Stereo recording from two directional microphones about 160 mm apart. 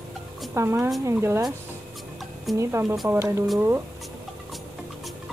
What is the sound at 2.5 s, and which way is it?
Speech, 15° right (ahead or behind).